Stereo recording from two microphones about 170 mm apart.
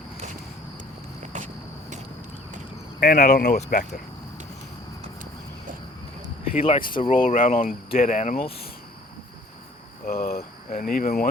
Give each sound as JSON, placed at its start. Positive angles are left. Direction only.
{"t": 1.2, "sound": "cricket", "side_deg": -45}
{"t": 3.0, "sound": "speech", "side_deg": 50}
{"t": 3.7, "sound": "speech", "side_deg": 60}
{"t": 6.6, "sound": "speech", "side_deg": 30}
{"t": 7.1, "sound": "speech", "side_deg": 50}
{"t": 10.1, "sound": "speech", "side_deg": 60}